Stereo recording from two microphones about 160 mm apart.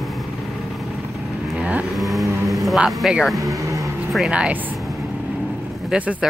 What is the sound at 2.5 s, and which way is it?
Speech, centre (ahead or behind).